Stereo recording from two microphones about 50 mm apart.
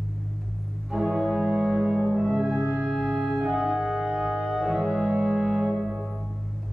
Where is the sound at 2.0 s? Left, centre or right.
Centre.